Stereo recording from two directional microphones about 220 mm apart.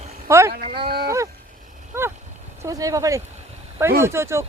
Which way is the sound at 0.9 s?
45° right (ahead or behind).